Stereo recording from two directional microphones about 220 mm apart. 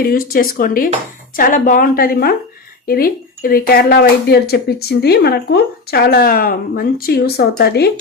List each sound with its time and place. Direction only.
0.0 s a woman's voice: 40° left (ahead or behind)